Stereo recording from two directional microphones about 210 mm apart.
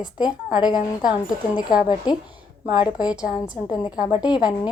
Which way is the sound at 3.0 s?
5° right (ahead or behind).